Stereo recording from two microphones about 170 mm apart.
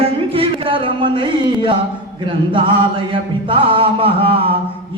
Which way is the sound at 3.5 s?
30° right (ahead or behind).